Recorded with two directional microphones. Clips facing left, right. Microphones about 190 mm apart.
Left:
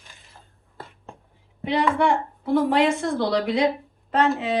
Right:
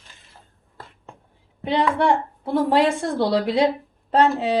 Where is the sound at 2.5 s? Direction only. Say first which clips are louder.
Right 1 dB; 30° right (ahead or behind).